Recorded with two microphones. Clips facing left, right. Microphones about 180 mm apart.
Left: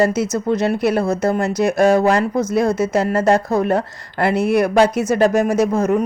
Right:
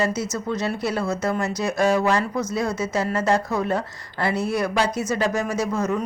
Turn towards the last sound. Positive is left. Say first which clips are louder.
# left 7 dB
turn(degrees=55)  # may be behind; listen again after turning